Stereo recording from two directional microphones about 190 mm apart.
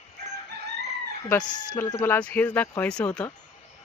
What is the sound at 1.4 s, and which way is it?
Speech, 20° left (ahead or behind).